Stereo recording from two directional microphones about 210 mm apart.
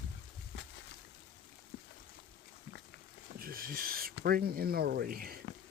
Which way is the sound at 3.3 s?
45° right (ahead or behind).